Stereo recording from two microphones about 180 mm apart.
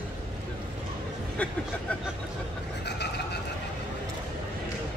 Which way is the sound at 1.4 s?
5° left (ahead or behind).